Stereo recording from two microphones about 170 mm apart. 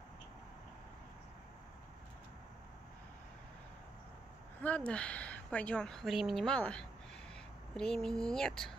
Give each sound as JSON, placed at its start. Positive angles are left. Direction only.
{"t": 4.6, "sound": "a woman's voice", "side_deg": 10}